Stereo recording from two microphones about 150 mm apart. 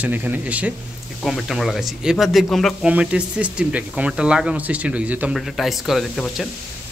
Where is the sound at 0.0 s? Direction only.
10° right (ahead or behind).